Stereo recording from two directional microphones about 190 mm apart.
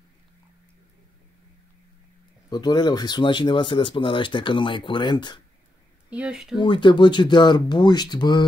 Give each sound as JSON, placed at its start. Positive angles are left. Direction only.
{"t": 2.5, "sound": "speech", "side_deg": 20}
{"t": 6.0, "sound": "speech", "side_deg": -5}
{"t": 6.6, "sound": "speech", "side_deg": 25}